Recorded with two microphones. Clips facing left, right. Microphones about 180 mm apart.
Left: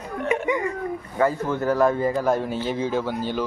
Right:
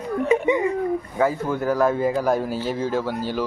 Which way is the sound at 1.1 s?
5° right (ahead or behind).